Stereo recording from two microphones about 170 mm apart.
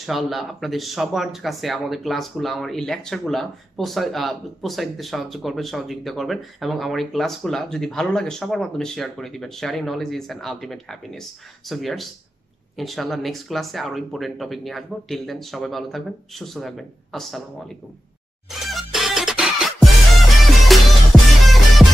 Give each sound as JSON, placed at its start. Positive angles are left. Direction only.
{"t": 0.0, "sound": "speech", "side_deg": 0}
{"t": 18.7, "sound": "music", "side_deg": 0}